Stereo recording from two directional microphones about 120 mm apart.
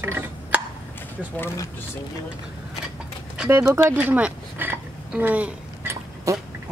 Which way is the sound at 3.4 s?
15° right (ahead or behind).